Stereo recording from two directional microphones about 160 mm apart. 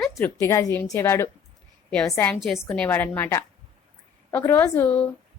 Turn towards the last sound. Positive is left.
turn(degrees=10)  # may be behind; listen again after turning